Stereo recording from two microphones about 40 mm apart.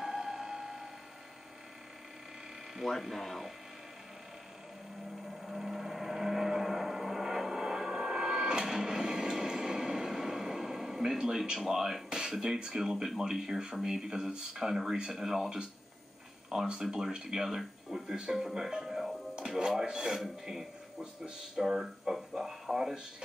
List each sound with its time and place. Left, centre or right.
0.0 s music: centre
3.0 s speech: centre
5.4 s vehicle: centre
8.5 s train: centre
12.5 s a man's voice: centre
22.3 s a sound: centre